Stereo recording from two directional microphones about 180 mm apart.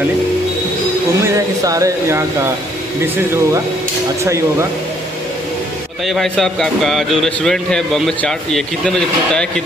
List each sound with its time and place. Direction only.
1.3 s speech: 20° right (ahead or behind)
4.2 s speech: 15° right (ahead or behind)
6.0 s a man's voice: centre (ahead or behind)